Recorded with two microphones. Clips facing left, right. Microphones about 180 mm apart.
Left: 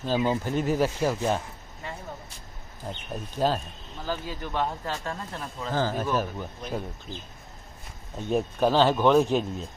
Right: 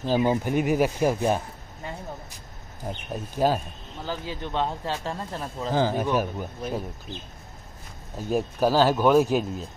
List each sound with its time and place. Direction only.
0.1 s speech: 15° right (ahead or behind)
2.9 s speech: 10° right (ahead or behind)
4.1 s speech: 20° right (ahead or behind)
5.7 s speech: 15° right (ahead or behind)
8.2 s speech: 5° right (ahead or behind)